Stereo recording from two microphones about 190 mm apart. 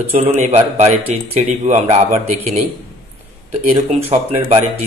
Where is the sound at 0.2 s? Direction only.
35° right (ahead or behind).